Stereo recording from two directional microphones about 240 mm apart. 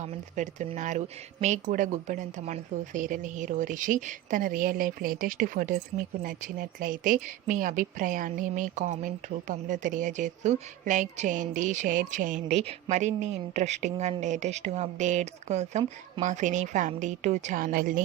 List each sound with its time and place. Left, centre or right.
0.0 s speech: right